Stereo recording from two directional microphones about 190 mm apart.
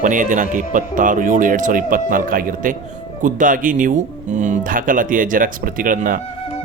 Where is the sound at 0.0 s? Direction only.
40° right (ahead or behind).